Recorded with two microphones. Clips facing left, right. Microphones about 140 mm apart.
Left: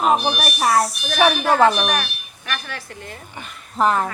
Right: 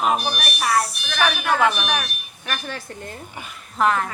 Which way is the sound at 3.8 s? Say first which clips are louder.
Left 2 dB; 35° left (ahead or behind).